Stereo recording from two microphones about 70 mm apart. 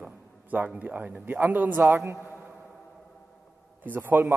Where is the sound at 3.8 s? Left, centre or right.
Right.